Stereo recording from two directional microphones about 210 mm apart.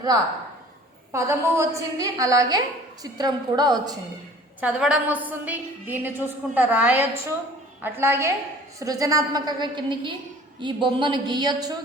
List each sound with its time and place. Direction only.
1.1 s a woman's voice: 15° right (ahead or behind)
4.6 s a woman's voice: 5° right (ahead or behind)